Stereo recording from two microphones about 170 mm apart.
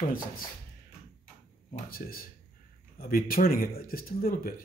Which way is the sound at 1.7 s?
60° left (ahead or behind).